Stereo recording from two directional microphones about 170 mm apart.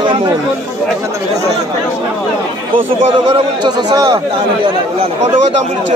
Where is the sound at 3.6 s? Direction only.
25° right (ahead or behind).